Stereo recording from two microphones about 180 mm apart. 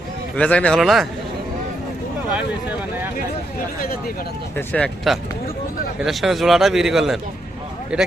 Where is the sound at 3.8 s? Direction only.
55° left (ahead or behind).